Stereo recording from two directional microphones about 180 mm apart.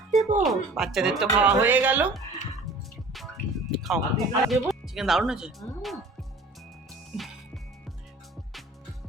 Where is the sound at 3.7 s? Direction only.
Centre (ahead or behind).